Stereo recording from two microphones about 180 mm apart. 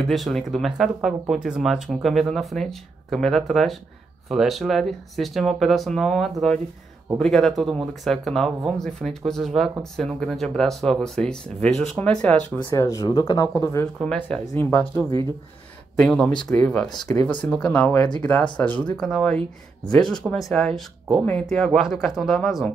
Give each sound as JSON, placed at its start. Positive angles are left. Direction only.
{"t": 0.0, "sound": "speech", "side_deg": 0}
{"t": 12.7, "sound": "speech", "side_deg": 20}
{"t": 13.9, "sound": "speech", "side_deg": 5}